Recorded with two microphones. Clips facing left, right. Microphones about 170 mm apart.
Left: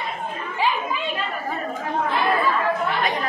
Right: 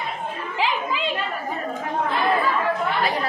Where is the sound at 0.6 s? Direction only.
90° right.